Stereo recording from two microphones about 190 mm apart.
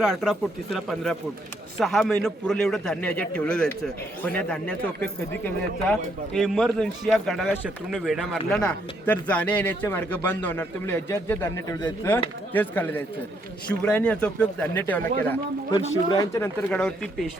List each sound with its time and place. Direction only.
0.0 s a man's voice: centre (ahead or behind)
15.7 s speech: 25° left (ahead or behind)
16.6 s a man's voice: 5° left (ahead or behind)